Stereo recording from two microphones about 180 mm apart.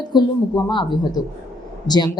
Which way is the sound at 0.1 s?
25° left (ahead or behind).